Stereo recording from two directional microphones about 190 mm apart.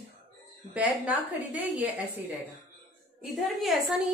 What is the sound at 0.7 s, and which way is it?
A woman's voice, 5° right (ahead or behind).